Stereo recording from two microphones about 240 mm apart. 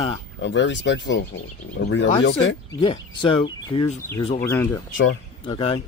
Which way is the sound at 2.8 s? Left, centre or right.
Left.